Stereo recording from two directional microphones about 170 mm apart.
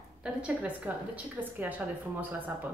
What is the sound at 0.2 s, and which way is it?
A woman's voice, 5° right (ahead or behind).